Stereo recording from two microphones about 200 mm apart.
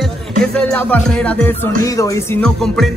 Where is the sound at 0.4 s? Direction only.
5° left (ahead or behind).